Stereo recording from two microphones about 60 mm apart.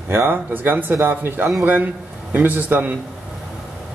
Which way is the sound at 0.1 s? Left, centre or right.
Right.